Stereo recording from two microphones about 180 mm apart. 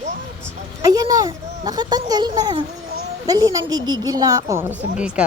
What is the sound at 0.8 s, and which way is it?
A child's voice, 20° right (ahead or behind).